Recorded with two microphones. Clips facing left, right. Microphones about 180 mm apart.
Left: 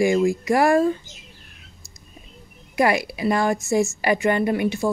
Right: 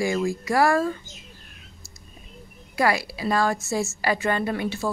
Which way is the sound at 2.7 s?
20° left (ahead or behind).